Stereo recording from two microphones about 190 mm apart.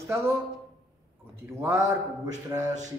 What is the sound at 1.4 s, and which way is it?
A man's voice, 15° right (ahead or behind).